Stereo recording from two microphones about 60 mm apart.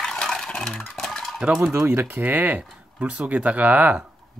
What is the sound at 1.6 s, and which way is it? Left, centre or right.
Speech, right.